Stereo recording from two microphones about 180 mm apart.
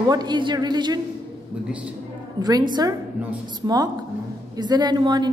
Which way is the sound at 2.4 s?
25° right (ahead or behind).